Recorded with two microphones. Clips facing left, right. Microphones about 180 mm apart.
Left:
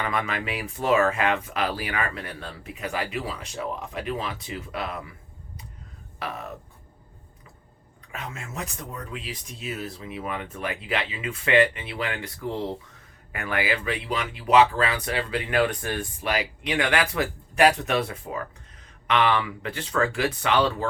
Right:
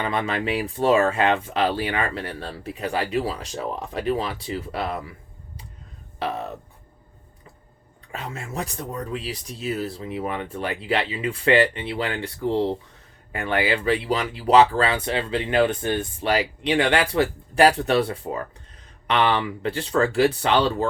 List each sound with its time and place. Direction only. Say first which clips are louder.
0.0 s speech: right 3 dB; 30° right (ahead or behind)
6.1 s a sound: right 6 dB; 30° right (ahead or behind)
8.1 s speech: right 4 dB; 35° right (ahead or behind)